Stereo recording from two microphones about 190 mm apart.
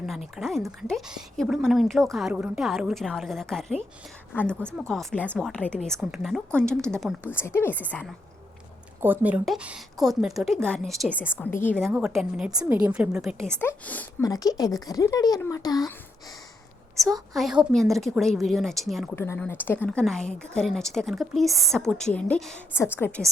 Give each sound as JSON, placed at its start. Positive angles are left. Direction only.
{"t": 0.3, "sound": "a woman's voice", "side_deg": 0}
{"t": 9.0, "sound": "speech", "side_deg": -10}
{"t": 11.3, "sound": "a woman's voice", "side_deg": 10}
{"t": 11.9, "sound": "speech", "side_deg": -5}
{"t": 13.6, "sound": "a woman's voice", "side_deg": 10}
{"t": 17.0, "sound": "a woman's voice", "side_deg": 0}
{"t": 19.1, "sound": "a woman's voice", "side_deg": 15}